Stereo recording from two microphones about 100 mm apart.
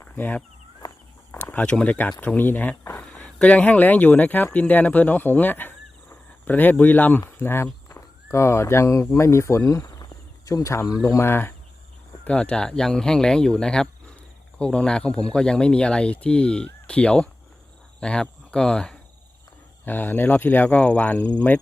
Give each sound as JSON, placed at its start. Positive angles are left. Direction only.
{"t": 0.0, "sound": "speech", "side_deg": 15}
{"t": 9.8, "sound": "cricket", "side_deg": 40}
{"t": 11.0, "sound": "speech", "side_deg": 30}
{"t": 19.8, "sound": "speech", "side_deg": 20}